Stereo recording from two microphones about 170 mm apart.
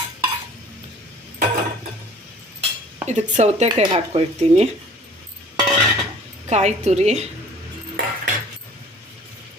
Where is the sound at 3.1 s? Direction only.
40° right (ahead or behind).